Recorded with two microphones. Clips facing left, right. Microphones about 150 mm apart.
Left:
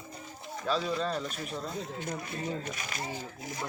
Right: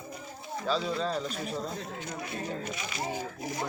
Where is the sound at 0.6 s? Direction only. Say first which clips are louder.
Even; centre (ahead or behind).